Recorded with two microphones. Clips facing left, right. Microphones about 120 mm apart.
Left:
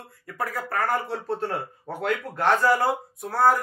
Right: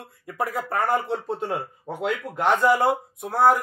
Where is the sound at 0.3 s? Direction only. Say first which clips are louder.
Right 3 dB; 20° right (ahead or behind).